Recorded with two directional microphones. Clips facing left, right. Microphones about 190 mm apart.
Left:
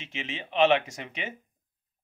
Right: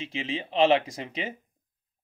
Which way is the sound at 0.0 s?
35° right (ahead or behind).